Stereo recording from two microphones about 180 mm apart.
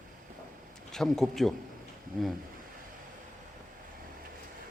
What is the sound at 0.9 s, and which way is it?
Speech, centre (ahead or behind).